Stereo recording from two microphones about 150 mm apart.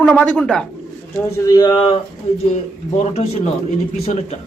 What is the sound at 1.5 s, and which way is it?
Speech, 25° left (ahead or behind).